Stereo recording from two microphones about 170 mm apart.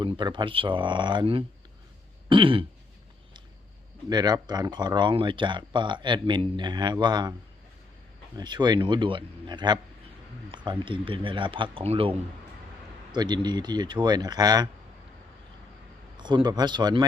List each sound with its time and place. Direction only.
0.0 s speech: 25° right (ahead or behind)
2.3 s throat clearing: 30° right (ahead or behind)
4.1 s speech: 25° right (ahead or behind)
8.4 s speech: 25° right (ahead or behind)
16.1 s speech: 25° right (ahead or behind)